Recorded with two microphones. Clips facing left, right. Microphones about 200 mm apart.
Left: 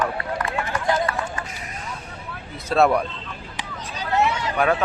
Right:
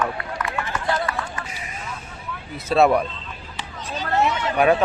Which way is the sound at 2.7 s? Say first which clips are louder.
Right 1 dB; centre (ahead or behind).